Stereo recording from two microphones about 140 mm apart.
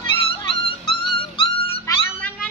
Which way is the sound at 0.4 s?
35° left (ahead or behind).